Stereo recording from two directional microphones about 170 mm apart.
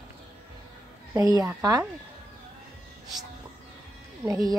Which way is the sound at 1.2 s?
20° right (ahead or behind).